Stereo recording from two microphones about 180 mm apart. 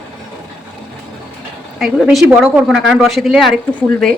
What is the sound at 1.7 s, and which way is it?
A woman's voice, centre (ahead or behind).